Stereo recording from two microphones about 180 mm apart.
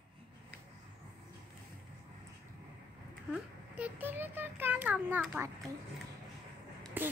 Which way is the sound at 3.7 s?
10° right (ahead or behind).